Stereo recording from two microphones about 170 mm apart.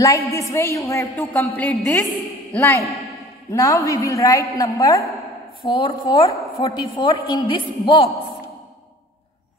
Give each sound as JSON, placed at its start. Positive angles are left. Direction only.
{"t": 0.0, "sound": "a woman's voice", "side_deg": 20}